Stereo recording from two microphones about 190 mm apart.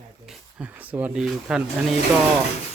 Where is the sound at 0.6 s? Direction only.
10° right (ahead or behind).